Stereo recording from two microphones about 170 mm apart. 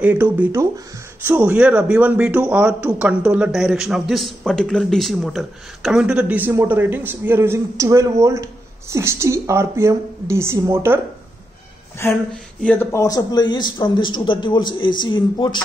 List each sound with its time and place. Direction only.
0.0 s speech: 10° right (ahead or behind)
12.0 s speech: 15° left (ahead or behind)